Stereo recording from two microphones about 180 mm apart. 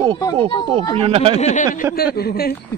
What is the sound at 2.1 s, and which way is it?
Speech, 60° left (ahead or behind).